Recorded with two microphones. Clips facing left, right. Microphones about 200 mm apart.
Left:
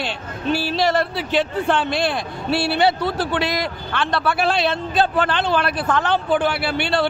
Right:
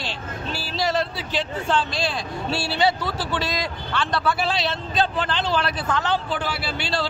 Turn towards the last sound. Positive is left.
turn(degrees=60)  # may be behind; listen again after turning